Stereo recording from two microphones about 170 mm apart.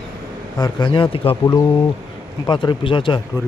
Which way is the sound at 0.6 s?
30° left (ahead or behind).